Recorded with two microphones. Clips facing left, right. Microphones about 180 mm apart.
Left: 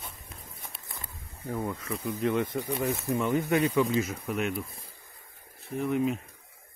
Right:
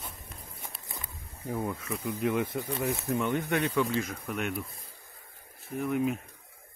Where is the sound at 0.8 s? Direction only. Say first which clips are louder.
Right 1 dB; 25° right (ahead or behind).